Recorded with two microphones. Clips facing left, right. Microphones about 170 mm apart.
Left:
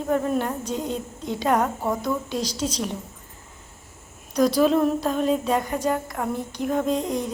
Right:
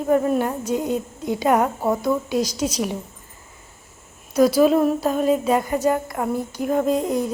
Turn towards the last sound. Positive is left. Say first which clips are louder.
# right 4 dB
turn(degrees=-5)  # may be behind; listen again after turning